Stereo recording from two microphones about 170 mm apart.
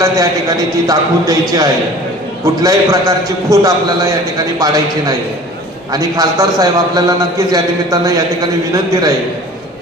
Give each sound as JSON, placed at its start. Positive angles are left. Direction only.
{"t": 0.9, "sound": "a man's voice", "side_deg": -20}